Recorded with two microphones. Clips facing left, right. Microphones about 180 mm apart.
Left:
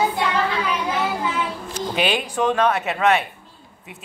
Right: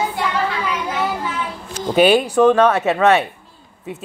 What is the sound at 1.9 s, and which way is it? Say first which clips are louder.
Speech: right 10 dB; 40° right (ahead or behind).